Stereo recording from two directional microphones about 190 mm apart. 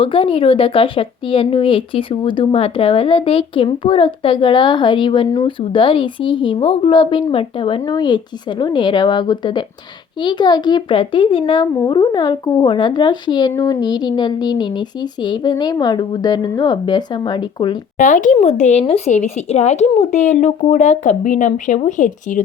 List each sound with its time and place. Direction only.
0.0 s speech: 30° left (ahead or behind)
17.9 s speech: 40° left (ahead or behind)